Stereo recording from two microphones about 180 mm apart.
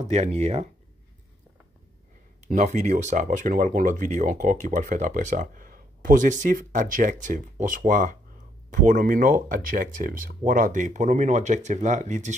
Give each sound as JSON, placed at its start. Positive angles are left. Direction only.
{"t": 0.0, "sound": "speech", "side_deg": -40}
{"t": 2.4, "sound": "speech", "side_deg": -40}